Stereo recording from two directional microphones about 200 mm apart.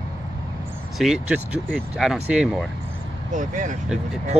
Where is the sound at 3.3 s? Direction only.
40° right (ahead or behind).